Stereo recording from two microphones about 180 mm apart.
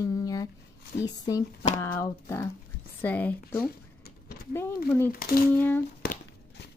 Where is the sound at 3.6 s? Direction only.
55° left (ahead or behind).